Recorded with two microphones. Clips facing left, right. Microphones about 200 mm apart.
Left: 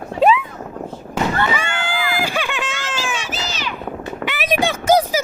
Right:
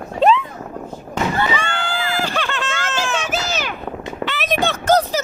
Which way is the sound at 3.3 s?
50° right (ahead or behind).